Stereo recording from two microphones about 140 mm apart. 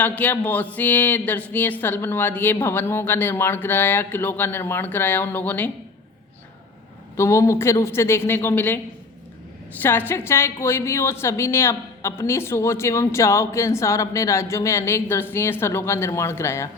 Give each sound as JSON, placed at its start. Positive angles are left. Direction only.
{"t": 0.0, "sound": "speech", "side_deg": 10}
{"t": 7.2, "sound": "a woman's voice", "side_deg": 20}
{"t": 9.8, "sound": "a woman's voice", "side_deg": 15}